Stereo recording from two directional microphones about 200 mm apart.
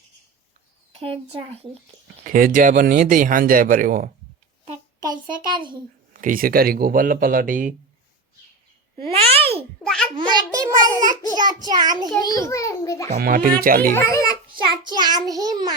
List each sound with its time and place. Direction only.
0.9 s a child's voice: 30° right (ahead or behind)
2.2 s speech: 45° right (ahead or behind)
4.6 s a sound: 25° right (ahead or behind)
5.5 s a child's voice: 25° right (ahead or behind)
6.1 s speech: 45° right (ahead or behind)
9.1 s a child's voice: 30° right (ahead or behind)
9.8 s a child's voice: 5° left (ahead or behind)
10.2 s a child's voice: 20° right (ahead or behind)
12.2 s a child's voice: 15° left (ahead or behind)
13.1 s speech: 45° right (ahead or behind)
13.9 s a child's voice: 15° left (ahead or behind)
14.5 s a child's voice: 20° right (ahead or behind)
15.3 s babbling: 20° right (ahead or behind)